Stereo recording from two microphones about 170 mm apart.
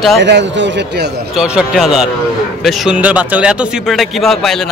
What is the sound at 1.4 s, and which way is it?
Speech, centre (ahead or behind).